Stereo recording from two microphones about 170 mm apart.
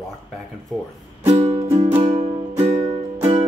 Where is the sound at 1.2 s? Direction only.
40° right (ahead or behind).